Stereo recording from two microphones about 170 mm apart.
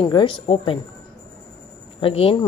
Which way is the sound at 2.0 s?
35° left (ahead or behind).